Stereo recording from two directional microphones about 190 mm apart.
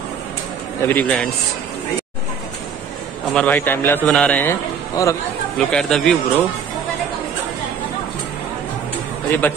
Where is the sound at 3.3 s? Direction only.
5° left (ahead or behind).